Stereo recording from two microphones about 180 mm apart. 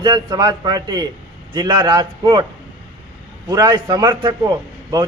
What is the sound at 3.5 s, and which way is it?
A man's voice, 25° right (ahead or behind).